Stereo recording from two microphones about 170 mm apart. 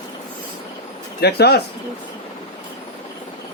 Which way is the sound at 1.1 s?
70° left (ahead or behind).